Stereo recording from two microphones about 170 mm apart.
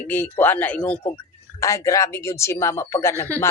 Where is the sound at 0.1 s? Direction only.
10° left (ahead or behind).